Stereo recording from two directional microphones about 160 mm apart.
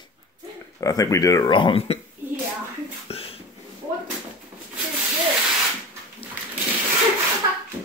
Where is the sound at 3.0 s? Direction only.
35° left (ahead or behind).